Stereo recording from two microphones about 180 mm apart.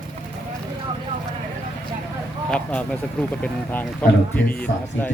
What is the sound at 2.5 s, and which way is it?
Speech, 5° left (ahead or behind).